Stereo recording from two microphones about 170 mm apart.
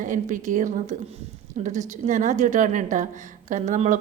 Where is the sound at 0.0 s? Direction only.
50° right (ahead or behind).